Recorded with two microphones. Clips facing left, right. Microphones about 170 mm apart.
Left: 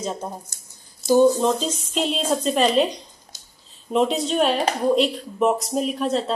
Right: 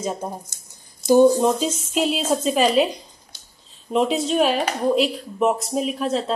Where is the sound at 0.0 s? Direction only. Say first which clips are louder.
Right 2 dB; 10° right (ahead or behind).